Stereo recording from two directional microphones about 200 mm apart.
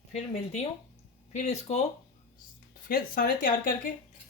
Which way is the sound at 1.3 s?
35° left (ahead or behind).